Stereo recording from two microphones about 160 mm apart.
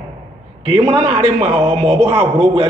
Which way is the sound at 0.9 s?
35° right (ahead or behind).